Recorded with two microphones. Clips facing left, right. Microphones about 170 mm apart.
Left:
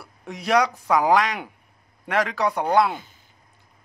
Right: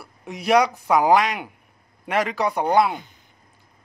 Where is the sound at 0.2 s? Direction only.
10° right (ahead or behind).